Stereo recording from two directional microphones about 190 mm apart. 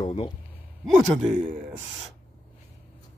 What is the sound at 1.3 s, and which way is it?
Speech, 45° right (ahead or behind).